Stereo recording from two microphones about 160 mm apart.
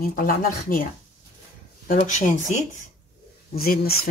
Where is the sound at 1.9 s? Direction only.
50° left (ahead or behind).